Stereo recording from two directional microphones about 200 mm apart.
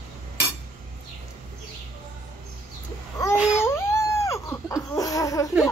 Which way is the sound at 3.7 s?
15° left (ahead or behind).